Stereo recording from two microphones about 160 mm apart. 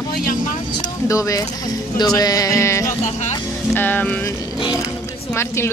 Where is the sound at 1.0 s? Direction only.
20° left (ahead or behind).